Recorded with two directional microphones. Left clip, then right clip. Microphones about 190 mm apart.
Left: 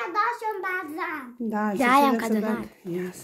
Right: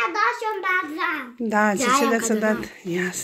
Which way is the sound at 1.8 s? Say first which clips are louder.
Even; 55° left (ahead or behind).